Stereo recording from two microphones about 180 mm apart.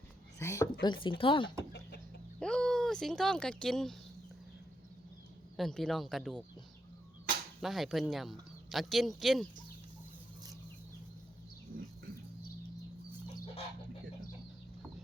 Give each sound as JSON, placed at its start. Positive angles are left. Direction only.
{"t": 0.3, "sound": "speech", "side_deg": 15}
{"t": 2.4, "sound": "speech", "side_deg": 5}
{"t": 5.5, "sound": "speech", "side_deg": 0}
{"t": 7.6, "sound": "speech", "side_deg": 0}